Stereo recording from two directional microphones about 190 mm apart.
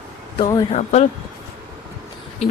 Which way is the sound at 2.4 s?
35° left (ahead or behind).